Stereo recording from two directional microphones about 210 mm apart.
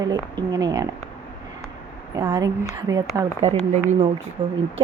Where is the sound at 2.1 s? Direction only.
20° right (ahead or behind).